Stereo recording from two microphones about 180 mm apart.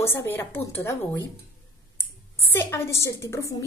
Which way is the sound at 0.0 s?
15° left (ahead or behind).